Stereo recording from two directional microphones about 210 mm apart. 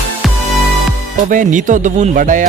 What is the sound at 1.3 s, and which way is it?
Speech, 35° right (ahead or behind).